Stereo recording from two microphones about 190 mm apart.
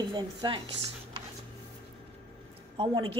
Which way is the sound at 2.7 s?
25° right (ahead or behind).